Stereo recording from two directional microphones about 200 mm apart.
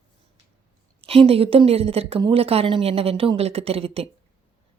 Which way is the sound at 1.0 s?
30° right (ahead or behind).